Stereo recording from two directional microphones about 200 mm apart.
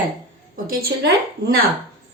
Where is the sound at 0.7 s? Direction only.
50° right (ahead or behind).